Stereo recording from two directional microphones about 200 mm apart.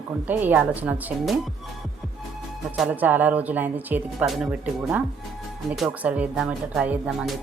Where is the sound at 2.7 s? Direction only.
5° right (ahead or behind).